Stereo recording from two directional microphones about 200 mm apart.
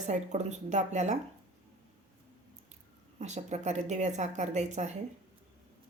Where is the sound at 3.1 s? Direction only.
35° right (ahead or behind).